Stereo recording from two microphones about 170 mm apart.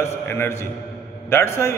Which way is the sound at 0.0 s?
15° left (ahead or behind).